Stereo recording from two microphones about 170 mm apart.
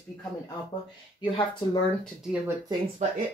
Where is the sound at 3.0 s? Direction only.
45° right (ahead or behind).